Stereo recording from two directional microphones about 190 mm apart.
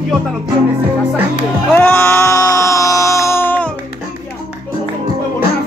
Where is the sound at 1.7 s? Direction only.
10° left (ahead or behind).